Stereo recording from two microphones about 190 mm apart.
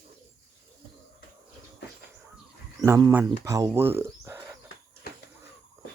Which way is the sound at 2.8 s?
15° right (ahead or behind).